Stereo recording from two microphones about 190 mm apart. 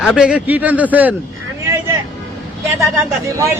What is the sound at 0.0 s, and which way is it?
A man's voice, 5° right (ahead or behind).